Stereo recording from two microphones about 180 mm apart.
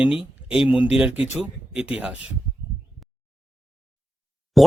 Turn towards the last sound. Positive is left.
turn(degrees=0)  # may be behind; listen again after turning